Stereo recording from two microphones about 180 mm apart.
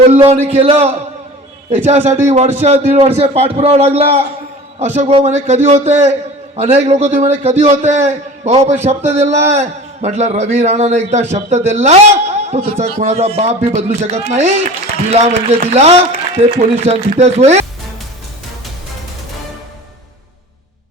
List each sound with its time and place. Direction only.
0.0 s a man's voice: 35° right (ahead or behind)